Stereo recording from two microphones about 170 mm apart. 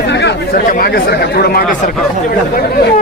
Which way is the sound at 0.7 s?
65° left (ahead or behind).